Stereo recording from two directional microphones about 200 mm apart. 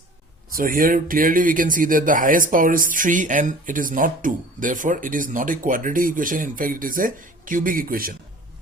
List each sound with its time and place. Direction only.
0.5 s speech: 45° right (ahead or behind)